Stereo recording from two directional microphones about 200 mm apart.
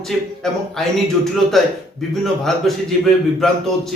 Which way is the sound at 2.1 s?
Centre (ahead or behind).